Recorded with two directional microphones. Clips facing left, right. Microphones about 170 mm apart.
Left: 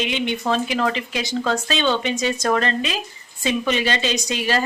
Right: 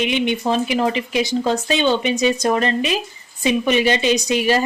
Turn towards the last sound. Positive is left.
turn(degrees=-15)  # may be behind; listen again after turning